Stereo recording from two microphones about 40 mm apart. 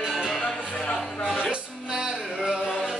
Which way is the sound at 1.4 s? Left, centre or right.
Centre.